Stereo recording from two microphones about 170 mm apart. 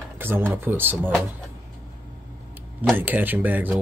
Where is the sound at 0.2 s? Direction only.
15° right (ahead or behind).